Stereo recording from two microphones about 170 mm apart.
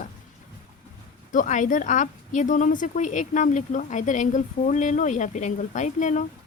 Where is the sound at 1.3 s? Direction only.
50° left (ahead or behind).